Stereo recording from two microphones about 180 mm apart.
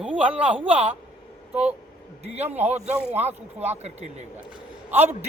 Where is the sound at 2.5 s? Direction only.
10° right (ahead or behind).